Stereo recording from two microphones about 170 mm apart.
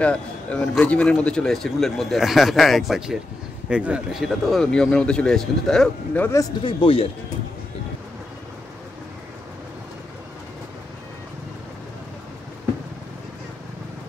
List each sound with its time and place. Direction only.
0.0 s a man's voice: 5° left (ahead or behind)
6.6 s speech: 35° left (ahead or behind)